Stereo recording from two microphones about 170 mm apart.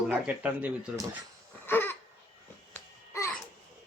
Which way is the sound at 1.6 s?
10° left (ahead or behind).